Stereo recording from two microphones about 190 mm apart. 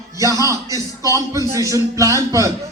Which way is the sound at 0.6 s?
20° left (ahead or behind).